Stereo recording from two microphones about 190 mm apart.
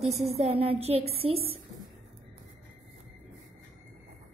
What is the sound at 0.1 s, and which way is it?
A woman's voice, 35° right (ahead or behind).